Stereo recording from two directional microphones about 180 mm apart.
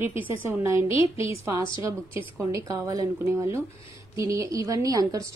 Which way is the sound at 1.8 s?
15° right (ahead or behind).